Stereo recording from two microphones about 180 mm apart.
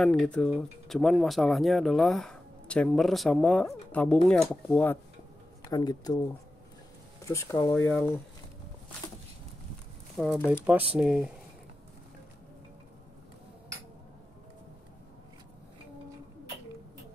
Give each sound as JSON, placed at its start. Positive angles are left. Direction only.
{"t": 0.0, "sound": "speech", "side_deg": 5}
{"t": 5.7, "sound": "speech", "side_deg": 20}
{"t": 7.2, "sound": "speech", "side_deg": 20}
{"t": 10.1, "sound": "speech", "side_deg": 0}